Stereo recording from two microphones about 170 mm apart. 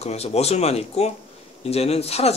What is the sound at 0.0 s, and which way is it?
Speech, 40° left (ahead or behind).